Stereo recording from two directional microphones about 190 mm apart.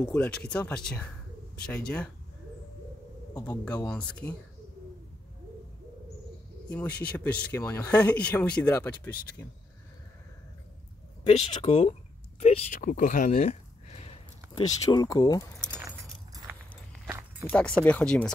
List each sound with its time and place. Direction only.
0.0 s speech: 5° left (ahead or behind)
3.4 s speech: 5° left (ahead or behind)
6.7 s speech: 5° left (ahead or behind)
11.2 s speech: 35° left (ahead or behind)
12.4 s a sound: 35° left (ahead or behind)
14.8 s speech: 20° left (ahead or behind)
16.5 s walk: 10° right (ahead or behind)
17.5 s speech: 5° left (ahead or behind)